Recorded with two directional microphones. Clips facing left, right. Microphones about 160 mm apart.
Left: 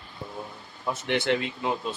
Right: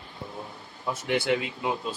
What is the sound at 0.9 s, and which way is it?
Speech, 10° right (ahead or behind).